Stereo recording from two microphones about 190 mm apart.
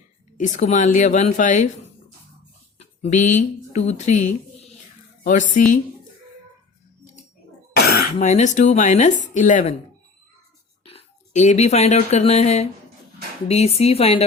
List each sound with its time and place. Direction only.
0.3 s speech: 40° left (ahead or behind)
2.7 s a woman's voice: 35° left (ahead or behind)
7.7 s throat clearing: 55° left (ahead or behind)
8.2 s speech: 40° left (ahead or behind)
10.8 s speech: 35° left (ahead or behind)